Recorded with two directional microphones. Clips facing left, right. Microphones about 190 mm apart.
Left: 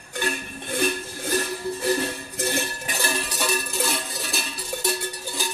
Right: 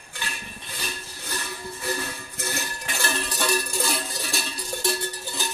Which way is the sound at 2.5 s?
25° left (ahead or behind).